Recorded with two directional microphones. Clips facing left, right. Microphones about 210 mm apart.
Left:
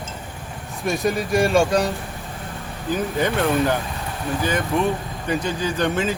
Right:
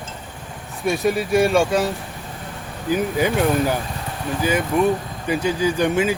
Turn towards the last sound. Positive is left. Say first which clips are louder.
# right 3 dB
turn(degrees=-10)  # may be behind; listen again after turning